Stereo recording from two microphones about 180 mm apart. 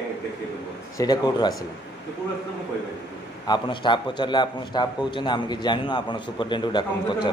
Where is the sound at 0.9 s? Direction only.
20° left (ahead or behind).